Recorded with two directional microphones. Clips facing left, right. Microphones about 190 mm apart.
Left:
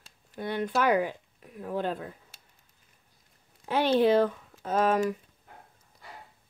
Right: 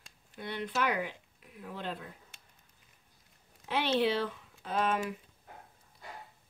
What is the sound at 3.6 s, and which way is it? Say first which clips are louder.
Speech: left 6 dB; 45° left (ahead or behind).